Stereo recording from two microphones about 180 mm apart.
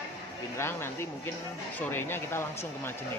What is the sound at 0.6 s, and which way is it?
A man's voice, 15° left (ahead or behind).